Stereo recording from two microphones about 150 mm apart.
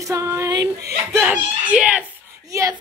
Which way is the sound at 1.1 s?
10° right (ahead or behind).